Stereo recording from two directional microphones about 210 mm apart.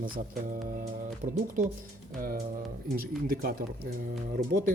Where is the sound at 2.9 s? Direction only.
45° right (ahead or behind).